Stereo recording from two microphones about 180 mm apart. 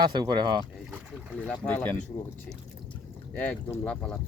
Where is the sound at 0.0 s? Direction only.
25° right (ahead or behind).